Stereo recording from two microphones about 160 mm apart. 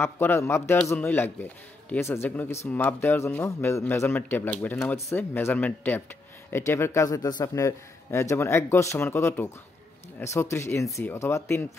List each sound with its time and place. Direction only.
0.0 s a man's voice: 15° left (ahead or behind)